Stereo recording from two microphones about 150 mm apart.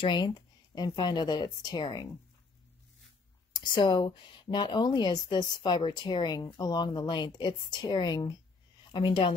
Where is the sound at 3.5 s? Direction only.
30° left (ahead or behind).